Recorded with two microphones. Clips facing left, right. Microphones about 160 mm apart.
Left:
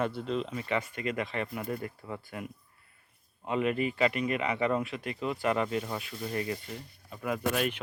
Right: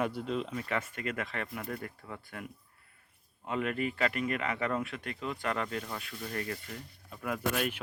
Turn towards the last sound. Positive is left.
turn(degrees=0)  # may be behind; listen again after turning